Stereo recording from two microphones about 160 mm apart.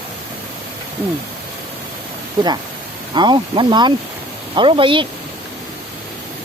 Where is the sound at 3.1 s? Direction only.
30° right (ahead or behind).